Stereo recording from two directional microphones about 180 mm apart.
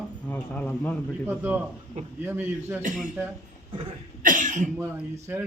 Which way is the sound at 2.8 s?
45° right (ahead or behind).